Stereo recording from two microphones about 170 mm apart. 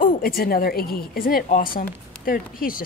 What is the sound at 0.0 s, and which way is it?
A woman's voice, 55° left (ahead or behind).